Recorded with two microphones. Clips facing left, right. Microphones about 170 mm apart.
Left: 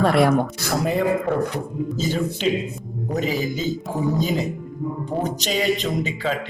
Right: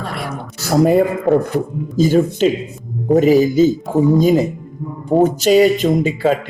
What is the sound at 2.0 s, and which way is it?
Speech, 45° right (ahead or behind).